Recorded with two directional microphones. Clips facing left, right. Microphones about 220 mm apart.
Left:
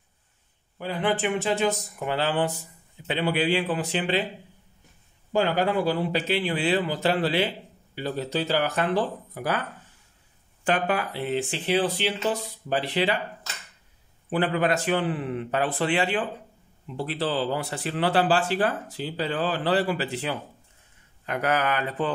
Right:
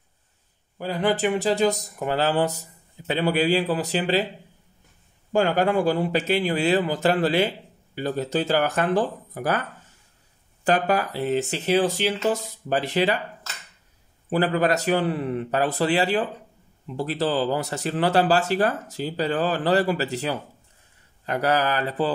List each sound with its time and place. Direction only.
0.7 s a man's voice: 40° right (ahead or behind)
5.3 s speech: 45° right (ahead or behind)
10.6 s speech: 40° right (ahead or behind)
14.3 s a man's voice: 40° right (ahead or behind)